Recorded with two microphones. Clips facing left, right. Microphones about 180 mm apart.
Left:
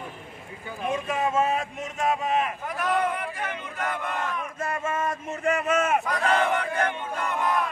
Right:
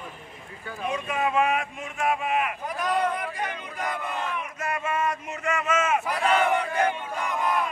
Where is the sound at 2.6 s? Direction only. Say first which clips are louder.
Even; 15° right (ahead or behind).